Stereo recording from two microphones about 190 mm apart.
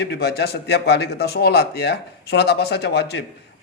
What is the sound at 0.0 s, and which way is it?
A man's voice, 60° left (ahead or behind).